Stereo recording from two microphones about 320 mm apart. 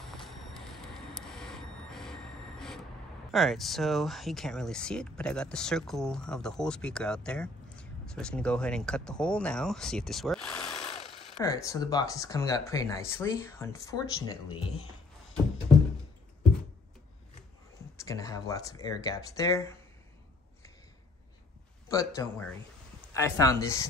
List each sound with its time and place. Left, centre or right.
0.2 s vehicle: centre
3.3 s speech: centre
10.8 s jackhammer: centre
11.3 s speech: centre
17.9 s speech: centre
21.8 s speech: centre